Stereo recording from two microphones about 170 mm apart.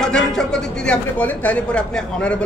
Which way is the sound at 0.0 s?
5° left (ahead or behind).